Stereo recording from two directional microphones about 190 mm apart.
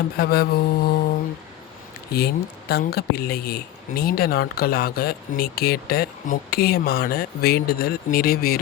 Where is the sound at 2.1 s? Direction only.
55° left (ahead or behind).